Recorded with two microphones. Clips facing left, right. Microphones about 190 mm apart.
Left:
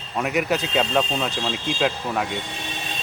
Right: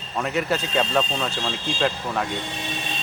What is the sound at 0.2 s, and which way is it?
Speech, 10° left (ahead or behind).